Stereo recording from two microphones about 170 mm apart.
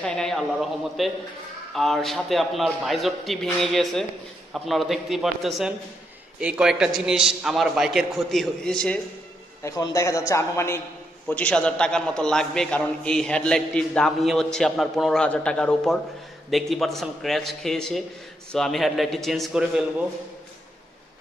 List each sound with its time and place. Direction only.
0.0 s a man's voice: 5° left (ahead or behind)
9.6 s a man's voice: 20° left (ahead or behind); by 19.8 s centre (ahead or behind)